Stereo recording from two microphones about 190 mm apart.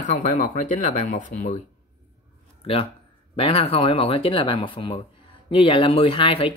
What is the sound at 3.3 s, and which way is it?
Speech, 30° left (ahead or behind).